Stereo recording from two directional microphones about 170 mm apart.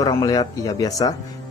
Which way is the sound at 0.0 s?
20° left (ahead or behind).